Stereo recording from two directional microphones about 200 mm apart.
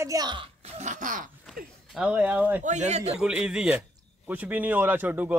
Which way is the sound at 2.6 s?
35° right (ahead or behind).